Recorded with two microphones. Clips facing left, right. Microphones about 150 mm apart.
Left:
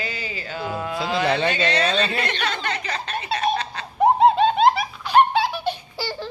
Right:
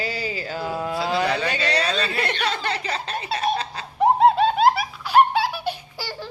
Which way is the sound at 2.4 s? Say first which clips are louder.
Right 1 dB; 35° right (ahead or behind).